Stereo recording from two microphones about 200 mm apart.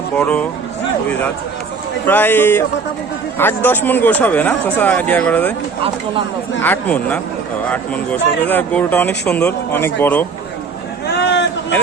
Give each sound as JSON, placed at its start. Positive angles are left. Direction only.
{"t": 0.2, "sound": "speech", "side_deg": 5}
{"t": 2.0, "sound": "speech", "side_deg": 10}
{"t": 6.6, "sound": "speech", "side_deg": 10}
{"t": 11.0, "sound": "a sound", "side_deg": 55}